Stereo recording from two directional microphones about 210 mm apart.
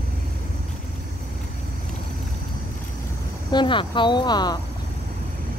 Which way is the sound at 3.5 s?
25° left (ahead or behind).